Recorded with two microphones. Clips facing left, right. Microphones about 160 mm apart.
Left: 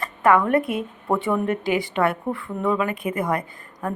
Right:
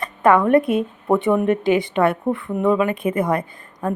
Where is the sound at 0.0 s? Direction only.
20° right (ahead or behind).